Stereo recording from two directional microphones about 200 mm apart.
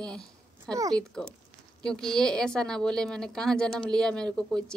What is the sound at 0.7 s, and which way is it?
Speech, 15° right (ahead or behind).